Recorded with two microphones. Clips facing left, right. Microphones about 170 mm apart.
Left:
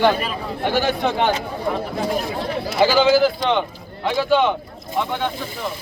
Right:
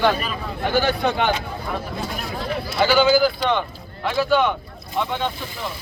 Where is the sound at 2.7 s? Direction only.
25° left (ahead or behind).